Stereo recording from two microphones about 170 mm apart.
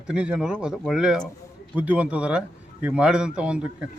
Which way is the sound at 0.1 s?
5° right (ahead or behind).